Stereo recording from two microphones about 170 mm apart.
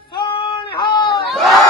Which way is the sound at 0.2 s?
30° left (ahead or behind).